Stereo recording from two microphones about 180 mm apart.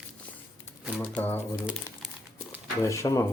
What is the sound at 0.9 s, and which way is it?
Speech, 10° left (ahead or behind).